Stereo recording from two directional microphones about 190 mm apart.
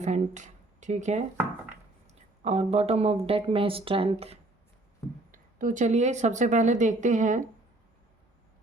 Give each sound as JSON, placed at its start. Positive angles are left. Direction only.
{"t": 0.0, "sound": "speech", "side_deg": -40}
{"t": 5.3, "sound": "speech", "side_deg": -45}